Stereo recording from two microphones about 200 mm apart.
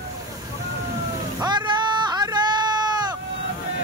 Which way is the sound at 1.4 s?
20° right (ahead or behind).